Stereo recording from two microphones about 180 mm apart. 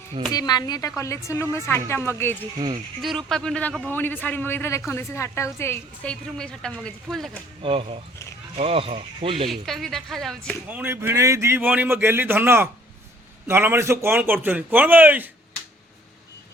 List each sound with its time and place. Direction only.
0.3 s a woman's voice: 20° left (ahead or behind)
2.6 s speech: 25° right (ahead or behind)
3.0 s a woman's voice: centre (ahead or behind)
7.6 s speech: 30° right (ahead or behind)
9.5 s speech: centre (ahead or behind)
10.7 s a man's voice: 10° right (ahead or behind)